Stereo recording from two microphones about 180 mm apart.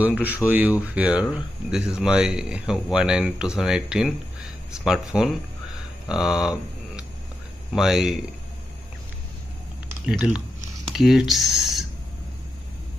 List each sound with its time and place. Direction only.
0.0 s speech: 10° right (ahead or behind)
10.0 s speech: 5° right (ahead or behind)